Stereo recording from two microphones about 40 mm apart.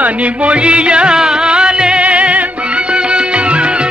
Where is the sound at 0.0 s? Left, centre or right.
Right.